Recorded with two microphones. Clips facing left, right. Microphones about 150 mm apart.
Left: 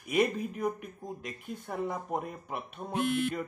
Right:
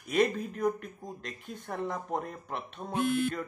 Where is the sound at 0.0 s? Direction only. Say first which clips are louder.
Right 1 dB; 10° left (ahead or behind).